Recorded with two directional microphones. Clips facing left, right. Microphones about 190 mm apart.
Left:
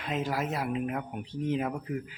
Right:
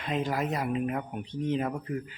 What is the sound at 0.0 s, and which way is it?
A man's voice, centre (ahead or behind).